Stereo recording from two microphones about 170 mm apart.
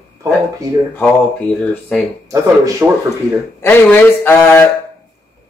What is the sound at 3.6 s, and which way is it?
Speech, 15° left (ahead or behind).